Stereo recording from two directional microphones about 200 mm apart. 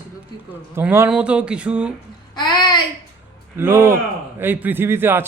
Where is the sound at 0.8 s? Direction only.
10° right (ahead or behind).